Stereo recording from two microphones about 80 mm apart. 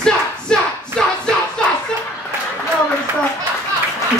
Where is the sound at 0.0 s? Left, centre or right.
Centre.